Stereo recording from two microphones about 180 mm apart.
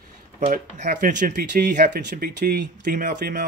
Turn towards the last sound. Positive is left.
turn(degrees=-45)  # may be behind; listen again after turning